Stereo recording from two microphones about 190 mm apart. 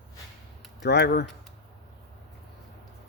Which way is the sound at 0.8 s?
60° left (ahead or behind).